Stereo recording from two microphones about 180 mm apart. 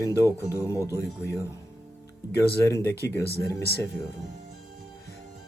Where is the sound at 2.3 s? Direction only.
15° left (ahead or behind).